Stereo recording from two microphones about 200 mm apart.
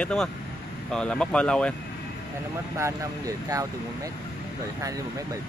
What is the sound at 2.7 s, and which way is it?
Speech, 15° right (ahead or behind).